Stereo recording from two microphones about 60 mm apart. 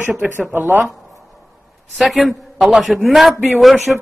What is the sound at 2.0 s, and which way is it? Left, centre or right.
A man's voice, centre.